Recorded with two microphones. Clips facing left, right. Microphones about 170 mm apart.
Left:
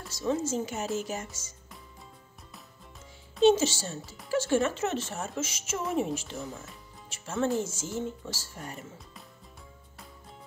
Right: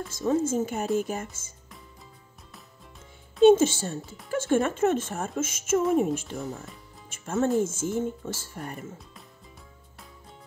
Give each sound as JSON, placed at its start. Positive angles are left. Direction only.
{"t": 0.1, "sound": "speech", "side_deg": -50}
{"t": 3.4, "sound": "speech", "side_deg": -50}